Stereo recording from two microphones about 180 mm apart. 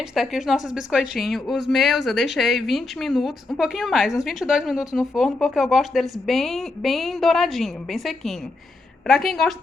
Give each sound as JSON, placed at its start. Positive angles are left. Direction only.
{"t": 0.1, "sound": "speech", "side_deg": 0}